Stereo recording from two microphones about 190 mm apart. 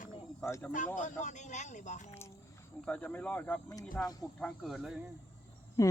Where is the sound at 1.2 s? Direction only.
40° left (ahead or behind).